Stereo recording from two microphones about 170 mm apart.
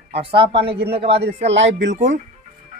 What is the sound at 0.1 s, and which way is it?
Speech, 30° right (ahead or behind).